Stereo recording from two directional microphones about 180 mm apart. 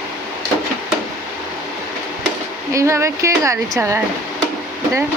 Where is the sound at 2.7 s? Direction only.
15° right (ahead or behind).